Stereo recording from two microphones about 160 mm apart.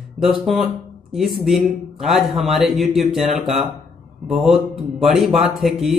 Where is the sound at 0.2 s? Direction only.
Centre (ahead or behind).